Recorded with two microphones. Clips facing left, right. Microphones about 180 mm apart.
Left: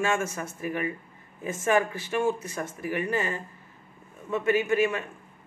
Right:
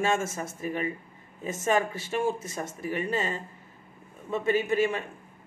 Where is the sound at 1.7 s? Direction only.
25° right (ahead or behind).